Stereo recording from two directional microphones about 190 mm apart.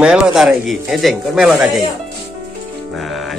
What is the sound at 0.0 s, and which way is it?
Speech, 5° right (ahead or behind).